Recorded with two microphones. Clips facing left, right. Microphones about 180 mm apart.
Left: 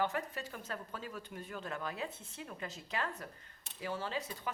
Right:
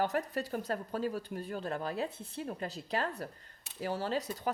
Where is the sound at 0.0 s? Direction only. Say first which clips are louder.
Right 4 dB; 40° right (ahead or behind).